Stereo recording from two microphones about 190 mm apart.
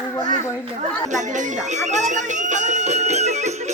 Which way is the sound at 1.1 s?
40° right (ahead or behind).